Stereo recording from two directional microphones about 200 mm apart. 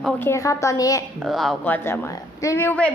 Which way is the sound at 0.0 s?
10° left (ahead or behind).